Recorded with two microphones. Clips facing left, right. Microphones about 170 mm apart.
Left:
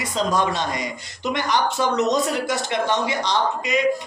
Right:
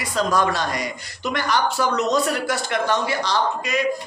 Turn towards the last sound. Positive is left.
turn(degrees=20)  # may be behind; listen again after turning